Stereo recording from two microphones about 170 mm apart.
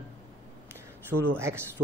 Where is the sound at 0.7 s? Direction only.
15° right (ahead or behind).